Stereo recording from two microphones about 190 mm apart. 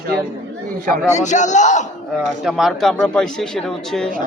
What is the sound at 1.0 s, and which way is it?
Speech, 40° left (ahead or behind).